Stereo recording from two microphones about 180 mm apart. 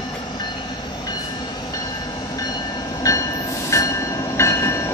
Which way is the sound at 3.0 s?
20° left (ahead or behind).